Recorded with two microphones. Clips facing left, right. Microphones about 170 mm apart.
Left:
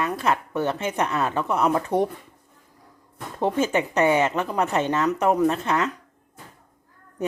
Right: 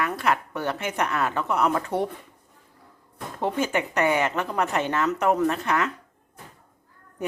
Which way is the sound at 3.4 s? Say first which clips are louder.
Left 3 dB; 20° left (ahead or behind).